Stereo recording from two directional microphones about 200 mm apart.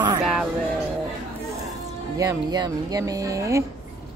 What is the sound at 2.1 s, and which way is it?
A woman's voice, 20° right (ahead or behind).